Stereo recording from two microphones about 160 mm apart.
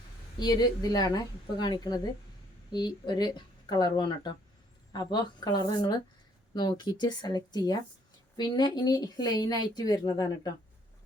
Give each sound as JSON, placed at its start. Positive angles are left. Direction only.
{"t": 0.3, "sound": "speech", "side_deg": 25}